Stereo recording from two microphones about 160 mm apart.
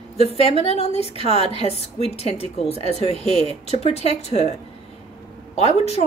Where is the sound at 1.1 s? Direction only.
35° right (ahead or behind).